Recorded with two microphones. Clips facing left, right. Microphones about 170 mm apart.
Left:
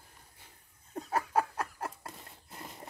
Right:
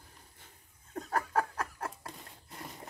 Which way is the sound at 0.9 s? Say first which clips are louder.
Left 1 dB; 10° left (ahead or behind).